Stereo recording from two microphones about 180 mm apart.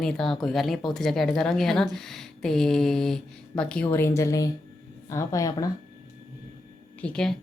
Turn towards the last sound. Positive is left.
turn(degrees=5)  # may be behind; listen again after turning